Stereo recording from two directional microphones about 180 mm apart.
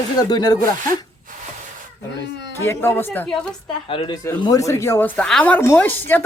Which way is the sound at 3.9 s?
30° left (ahead or behind).